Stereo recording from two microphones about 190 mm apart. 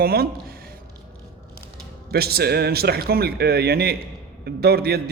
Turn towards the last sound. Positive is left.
turn(degrees=-55)  # may be behind; listen again after turning